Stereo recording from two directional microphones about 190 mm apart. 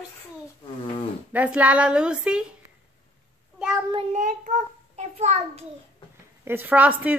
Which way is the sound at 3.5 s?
5° right (ahead or behind).